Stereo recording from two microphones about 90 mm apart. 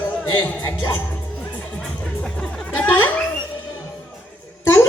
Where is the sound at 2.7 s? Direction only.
25° left (ahead or behind).